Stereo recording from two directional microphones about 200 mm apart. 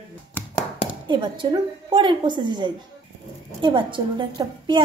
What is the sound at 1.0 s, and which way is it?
A woman's voice, 25° right (ahead or behind).